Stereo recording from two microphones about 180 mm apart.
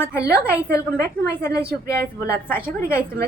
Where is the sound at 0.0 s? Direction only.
15° left (ahead or behind).